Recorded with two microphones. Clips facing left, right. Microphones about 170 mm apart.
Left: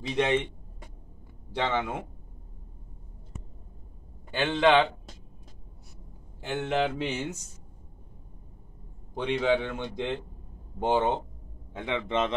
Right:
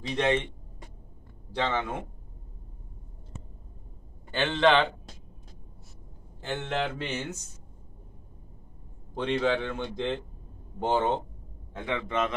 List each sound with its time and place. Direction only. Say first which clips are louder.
0.1 s a man's voice: even; 10° left (ahead or behind)
1.5 s a man's voice: left 1 dB; 10° left (ahead or behind)
4.3 s a man's voice: left 1 dB; 10° left (ahead or behind)
6.4 s a man's voice: left 3 dB; 10° left (ahead or behind)
9.1 s a man's voice: left 1 dB; 10° left (ahead or behind)